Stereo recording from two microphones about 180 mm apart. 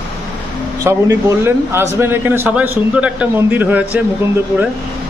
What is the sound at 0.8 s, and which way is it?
A man's voice, 15° right (ahead or behind).